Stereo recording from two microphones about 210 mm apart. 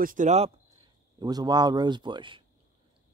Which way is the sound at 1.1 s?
20° right (ahead or behind).